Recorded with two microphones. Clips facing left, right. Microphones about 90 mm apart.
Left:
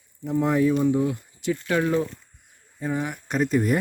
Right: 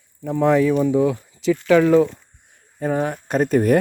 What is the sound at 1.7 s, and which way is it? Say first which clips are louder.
Speech: right 10 dB; 90° right.